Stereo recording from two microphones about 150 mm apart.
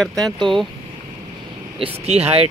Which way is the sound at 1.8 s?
45° right (ahead or behind).